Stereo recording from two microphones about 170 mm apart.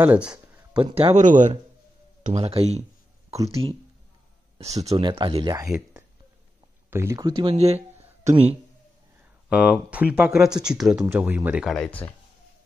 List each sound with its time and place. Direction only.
0.0 s speech: 10° right (ahead or behind)
0.7 s speech: 30° right (ahead or behind)
4.9 s speech: 30° right (ahead or behind)
6.9 s speech: 15° right (ahead or behind); by 8.5 s 40° right (ahead or behind)
9.5 s speech: 5° right (ahead or behind)